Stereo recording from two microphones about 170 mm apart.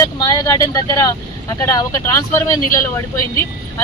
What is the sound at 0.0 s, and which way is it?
Speech, 20° left (ahead or behind).